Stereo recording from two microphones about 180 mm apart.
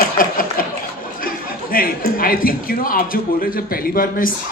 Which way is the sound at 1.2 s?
55° left (ahead or behind).